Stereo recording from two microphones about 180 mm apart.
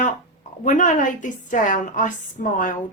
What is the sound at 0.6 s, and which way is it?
A woman's voice, 45° left (ahead or behind).